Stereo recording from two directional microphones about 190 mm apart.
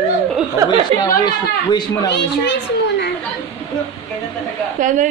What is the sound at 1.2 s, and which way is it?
Speech, 20° left (ahead or behind).